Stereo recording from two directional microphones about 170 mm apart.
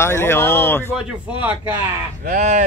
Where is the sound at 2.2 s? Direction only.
45° right (ahead or behind).